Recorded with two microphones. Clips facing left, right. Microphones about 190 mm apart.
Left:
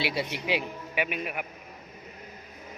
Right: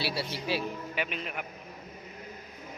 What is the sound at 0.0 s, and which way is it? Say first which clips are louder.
A man's voice: left 3 dB; 20° left (ahead or behind).